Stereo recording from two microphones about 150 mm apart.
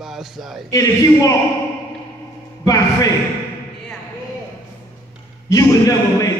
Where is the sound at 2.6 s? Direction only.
25° left (ahead or behind).